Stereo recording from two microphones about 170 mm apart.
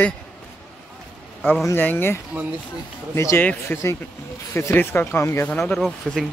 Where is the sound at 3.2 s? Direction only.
15° left (ahead or behind).